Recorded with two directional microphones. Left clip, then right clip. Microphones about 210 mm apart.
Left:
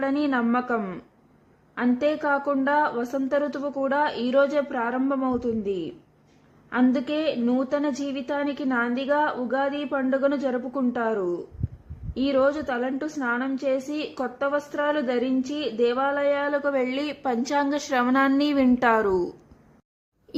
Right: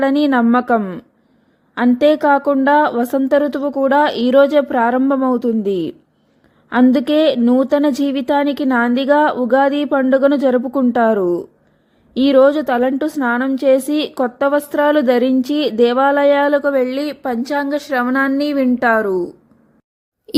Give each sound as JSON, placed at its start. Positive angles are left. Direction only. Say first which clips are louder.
{"t": 0.0, "sound": "a woman's voice", "louder": "right 10 dB", "side_deg": -35}
{"t": 1.7, "sound": "a woman's voice", "louder": "right 11 dB", "side_deg": -35}